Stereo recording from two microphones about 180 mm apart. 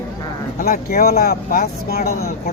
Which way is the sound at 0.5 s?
55° left (ahead or behind).